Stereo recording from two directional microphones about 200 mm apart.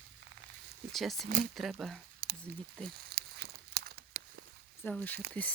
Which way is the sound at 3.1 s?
50° right (ahead or behind).